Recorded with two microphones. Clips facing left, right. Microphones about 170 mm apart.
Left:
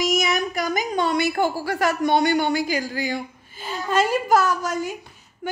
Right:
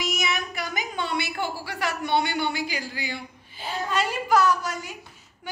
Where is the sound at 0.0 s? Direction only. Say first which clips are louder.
Left 7 dB; 40° left (ahead or behind).